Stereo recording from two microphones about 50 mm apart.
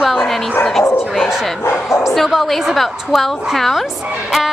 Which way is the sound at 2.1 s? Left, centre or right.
Centre.